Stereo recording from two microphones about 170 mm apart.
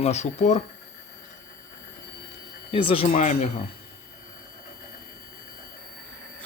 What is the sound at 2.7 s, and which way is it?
Speech, 30° left (ahead or behind).